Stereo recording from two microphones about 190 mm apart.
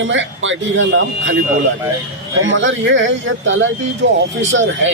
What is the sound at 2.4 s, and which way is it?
A man's voice, 80° right.